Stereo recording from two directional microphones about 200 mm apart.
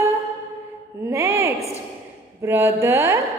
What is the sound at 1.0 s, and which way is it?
A woman's voice, 15° right (ahead or behind).